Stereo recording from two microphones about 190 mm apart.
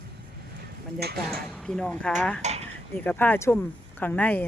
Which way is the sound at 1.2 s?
5° left (ahead or behind).